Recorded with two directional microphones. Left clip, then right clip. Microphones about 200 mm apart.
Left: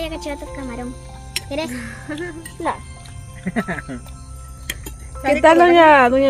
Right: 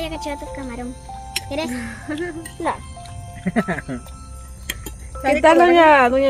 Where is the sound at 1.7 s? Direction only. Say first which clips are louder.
Right 1 dB; 45° right (ahead or behind).